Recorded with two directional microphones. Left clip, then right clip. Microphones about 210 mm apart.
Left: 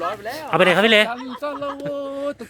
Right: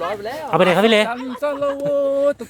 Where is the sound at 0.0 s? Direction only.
50° right (ahead or behind).